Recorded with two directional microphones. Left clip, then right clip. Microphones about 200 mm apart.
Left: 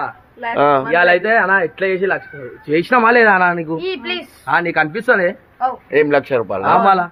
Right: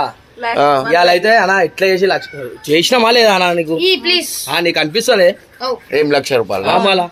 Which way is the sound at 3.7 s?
30° left (ahead or behind).